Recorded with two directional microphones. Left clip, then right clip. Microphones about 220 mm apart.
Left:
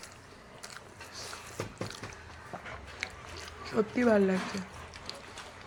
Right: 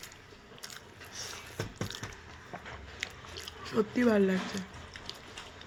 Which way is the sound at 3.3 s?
20° right (ahead or behind).